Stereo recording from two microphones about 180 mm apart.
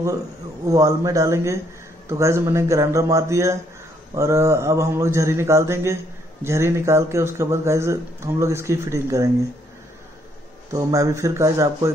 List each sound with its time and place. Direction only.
0.7 s speech: 20° right (ahead or behind)
10.7 s speech: 20° right (ahead or behind)